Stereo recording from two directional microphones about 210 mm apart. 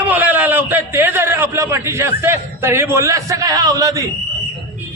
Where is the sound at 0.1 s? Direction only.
10° right (ahead or behind).